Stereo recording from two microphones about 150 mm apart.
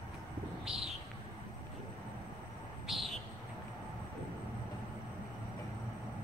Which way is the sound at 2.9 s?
Centre (ahead or behind).